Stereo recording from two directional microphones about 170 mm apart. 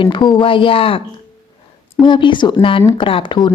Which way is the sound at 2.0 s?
30° left (ahead or behind).